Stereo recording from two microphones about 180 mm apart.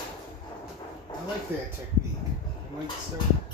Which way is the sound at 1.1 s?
25° left (ahead or behind).